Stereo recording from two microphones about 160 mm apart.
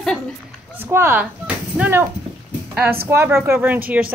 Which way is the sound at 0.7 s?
15° right (ahead or behind).